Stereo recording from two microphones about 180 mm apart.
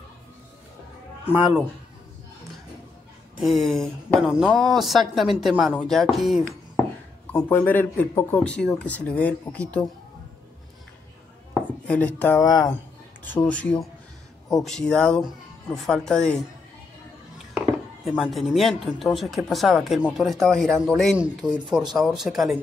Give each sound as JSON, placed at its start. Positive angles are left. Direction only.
{"t": 1.2, "sound": "speech", "side_deg": -10}
{"t": 3.3, "sound": "speech", "side_deg": 0}
{"t": 7.4, "sound": "speech", "side_deg": 10}
{"t": 11.8, "sound": "speech", "side_deg": 5}
{"t": 12.4, "sound": "speech", "side_deg": 20}
{"t": 13.2, "sound": "speech", "side_deg": 10}
{"t": 17.6, "sound": "speech", "side_deg": -5}